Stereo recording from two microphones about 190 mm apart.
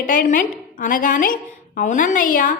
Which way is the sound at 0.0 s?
45° left (ahead or behind).